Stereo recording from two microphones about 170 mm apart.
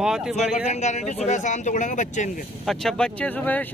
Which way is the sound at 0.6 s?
40° left (ahead or behind).